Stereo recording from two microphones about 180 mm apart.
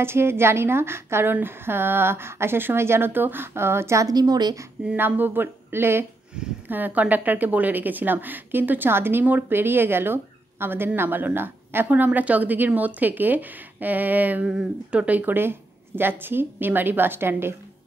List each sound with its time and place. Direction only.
0.0 s speech: 15° right (ahead or behind)
4.8 s speech: 10° right (ahead or behind)